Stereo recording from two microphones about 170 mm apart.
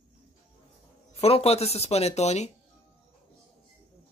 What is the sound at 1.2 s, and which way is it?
Speech, 35° left (ahead or behind).